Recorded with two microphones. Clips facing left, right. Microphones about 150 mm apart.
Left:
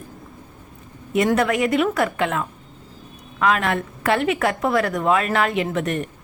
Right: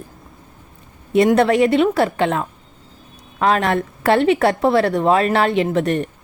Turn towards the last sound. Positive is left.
turn(degrees=-35)  # may be behind; listen again after turning